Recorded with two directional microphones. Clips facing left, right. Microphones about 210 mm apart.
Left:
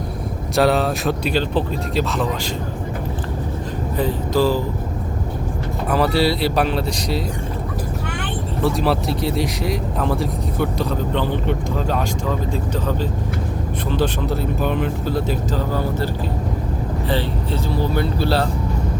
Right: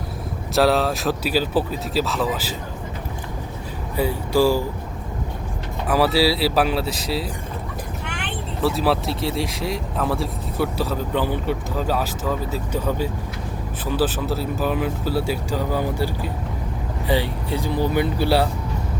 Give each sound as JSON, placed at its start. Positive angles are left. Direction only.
{"t": 0.5, "sound": "speech", "side_deg": 0}
{"t": 3.9, "sound": "speech", "side_deg": -10}
{"t": 5.9, "sound": "speech", "side_deg": -5}
{"t": 8.6, "sound": "speech", "side_deg": -5}
{"t": 17.1, "sound": "speech", "side_deg": -15}